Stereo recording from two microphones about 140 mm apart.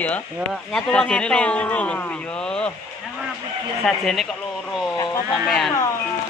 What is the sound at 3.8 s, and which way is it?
Speech, centre (ahead or behind).